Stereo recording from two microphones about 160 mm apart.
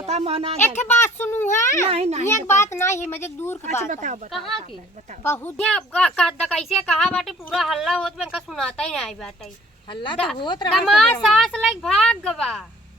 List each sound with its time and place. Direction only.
0.0 s speech: 40° right (ahead or behind)
0.9 s a child's voice: 15° left (ahead or behind)
1.9 s a child's voice: 40° right (ahead or behind)
2.2 s a child's voice: 15° left (ahead or behind)
3.8 s speech: 50° right (ahead or behind)
4.3 s speech: centre (ahead or behind)
5.2 s a child's voice: 15° left (ahead or behind)
9.9 s speech: 30° left (ahead or behind)
10.8 s speech: 5° left (ahead or behind)